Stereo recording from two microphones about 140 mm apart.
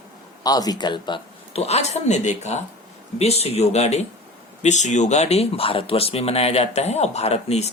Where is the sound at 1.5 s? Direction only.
50° left (ahead or behind).